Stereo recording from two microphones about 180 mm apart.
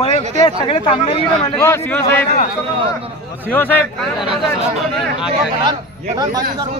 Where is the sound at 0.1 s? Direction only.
40° right (ahead or behind).